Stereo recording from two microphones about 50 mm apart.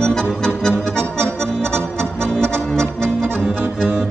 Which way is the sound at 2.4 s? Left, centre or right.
Centre.